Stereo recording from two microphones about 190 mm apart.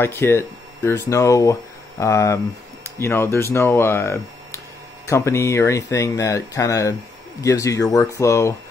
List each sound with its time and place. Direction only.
0.0 s speech: 15° left (ahead or behind)